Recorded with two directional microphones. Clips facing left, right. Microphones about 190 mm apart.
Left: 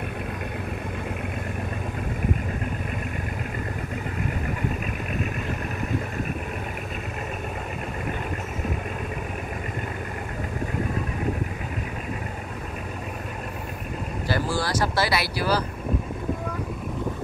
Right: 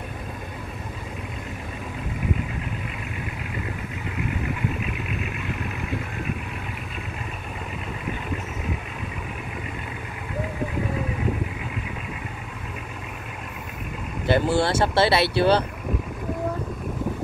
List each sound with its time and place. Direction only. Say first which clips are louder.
14.2 s speech: right 6 dB; 25° right (ahead or behind)